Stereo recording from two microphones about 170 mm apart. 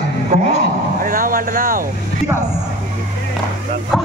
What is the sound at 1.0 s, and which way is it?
Vehicle, 55° right (ahead or behind).